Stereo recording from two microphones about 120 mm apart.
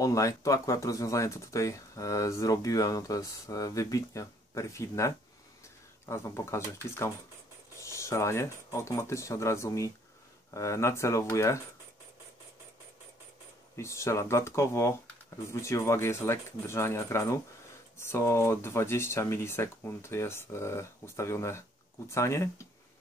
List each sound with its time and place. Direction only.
0.0 s speech: 25° left (ahead or behind)
13.7 s speech: 25° left (ahead or behind)